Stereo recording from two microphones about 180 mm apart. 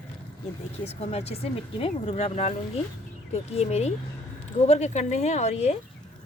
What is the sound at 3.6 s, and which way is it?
A woman's voice, 35° left (ahead or behind).